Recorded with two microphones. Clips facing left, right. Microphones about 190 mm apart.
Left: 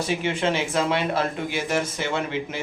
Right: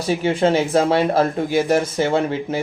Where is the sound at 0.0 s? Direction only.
35° right (ahead or behind).